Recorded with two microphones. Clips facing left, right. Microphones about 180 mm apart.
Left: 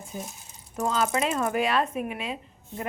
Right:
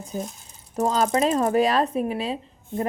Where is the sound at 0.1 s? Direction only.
35° right (ahead or behind).